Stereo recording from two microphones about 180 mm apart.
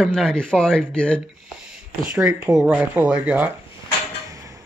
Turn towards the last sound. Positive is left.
turn(degrees=-20)  # may be behind; listen again after turning